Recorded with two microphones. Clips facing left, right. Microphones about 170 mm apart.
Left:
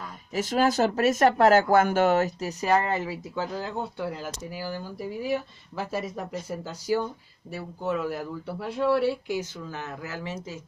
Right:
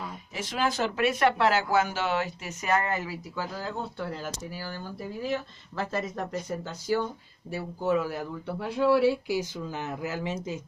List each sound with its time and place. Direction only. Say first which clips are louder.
0.3 s speech: left 6 dB; 40° left (ahead or behind); by 7.1 s 10° left (ahead or behind)
7.5 s speech: right 3 dB; centre (ahead or behind)
9.4 s speech: right 2 dB; 15° right (ahead or behind)